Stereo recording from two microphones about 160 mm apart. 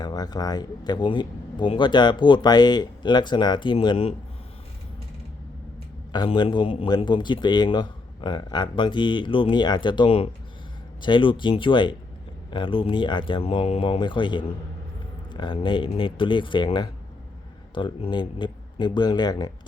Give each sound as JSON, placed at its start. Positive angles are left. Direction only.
{"t": 0.0, "sound": "a man's voice", "side_deg": 25}
{"t": 6.1, "sound": "a man's voice", "side_deg": 30}